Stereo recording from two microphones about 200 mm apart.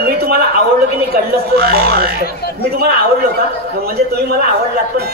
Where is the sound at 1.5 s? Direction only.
50° right (ahead or behind).